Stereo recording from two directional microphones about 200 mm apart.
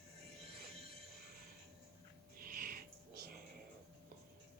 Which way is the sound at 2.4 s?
45° right (ahead or behind).